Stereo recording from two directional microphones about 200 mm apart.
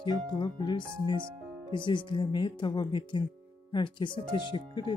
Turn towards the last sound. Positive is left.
turn(degrees=25)  # may be behind; listen again after turning